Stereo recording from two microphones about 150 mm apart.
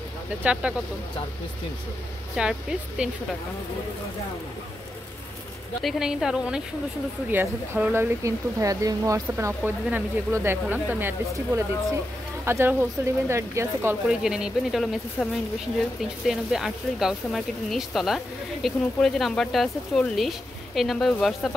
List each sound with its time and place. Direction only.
0.4 s speech: 10° right (ahead or behind)
2.4 s speech: 5° right (ahead or behind)
5.8 s speech: centre (ahead or behind); by 9.6 s 20° right (ahead or behind)
9.6 s speech: 10° right (ahead or behind)
14.0 s speech: 5° right (ahead or behind)